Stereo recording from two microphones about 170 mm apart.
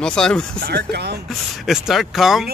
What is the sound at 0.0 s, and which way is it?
Speech, 5° left (ahead or behind).